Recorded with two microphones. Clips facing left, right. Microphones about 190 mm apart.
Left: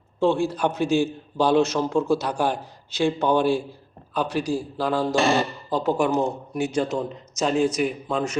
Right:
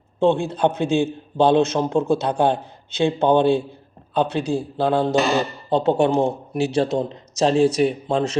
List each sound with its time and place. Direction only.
0.2 s a man's voice: 20° right (ahead or behind)